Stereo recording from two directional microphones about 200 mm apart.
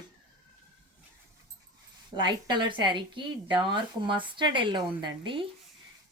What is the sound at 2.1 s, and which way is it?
A woman's voice, 20° right (ahead or behind).